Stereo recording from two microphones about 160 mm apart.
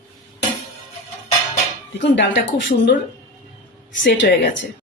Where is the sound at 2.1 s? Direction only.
90° left.